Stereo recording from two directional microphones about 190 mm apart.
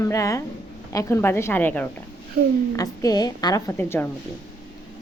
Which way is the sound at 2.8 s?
20° left (ahead or behind).